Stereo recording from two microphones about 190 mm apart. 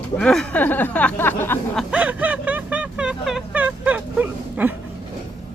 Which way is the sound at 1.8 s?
5° right (ahead or behind).